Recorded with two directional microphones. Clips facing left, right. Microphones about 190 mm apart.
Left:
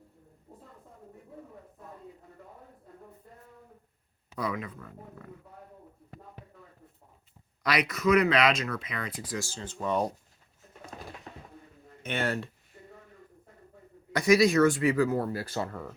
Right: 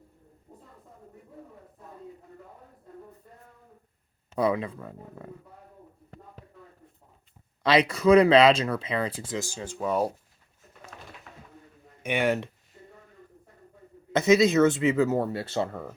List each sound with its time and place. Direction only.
4.4 s speech: 30° right (ahead or behind)
7.6 s speech: 25° right (ahead or behind); by 10.1 s 5° right (ahead or behind)
10.9 s pigeon: 35° left (ahead or behind)
12.0 s speech: 15° right (ahead or behind)
14.1 s speech: 25° right (ahead or behind)